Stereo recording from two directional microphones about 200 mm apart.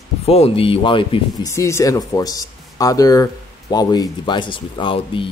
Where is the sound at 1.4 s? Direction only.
15° left (ahead or behind).